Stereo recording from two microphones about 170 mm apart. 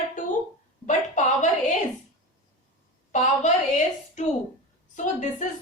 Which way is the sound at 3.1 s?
45° left (ahead or behind).